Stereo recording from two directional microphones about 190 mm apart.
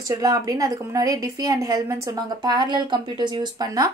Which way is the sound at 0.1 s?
20° right (ahead or behind).